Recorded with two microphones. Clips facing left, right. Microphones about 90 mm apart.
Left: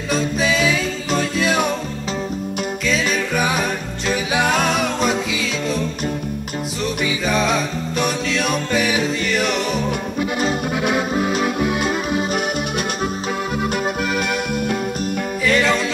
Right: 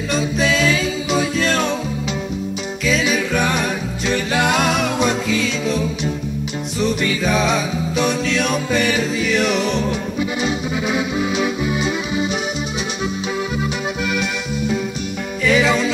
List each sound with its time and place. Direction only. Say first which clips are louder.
0.1 s music: even; centre (ahead or behind)
2.9 s music: right 3 dB; centre (ahead or behind)
10.9 s accordion: left 1 dB; 55° left (ahead or behind)
14.5 s music: even; 55° left (ahead or behind)
15.4 s music: right 2 dB; centre (ahead or behind)